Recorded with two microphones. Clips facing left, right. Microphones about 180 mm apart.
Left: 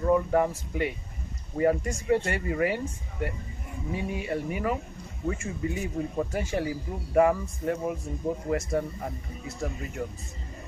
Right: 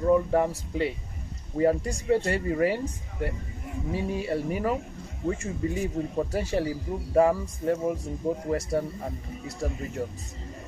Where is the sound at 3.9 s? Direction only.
35° right (ahead or behind).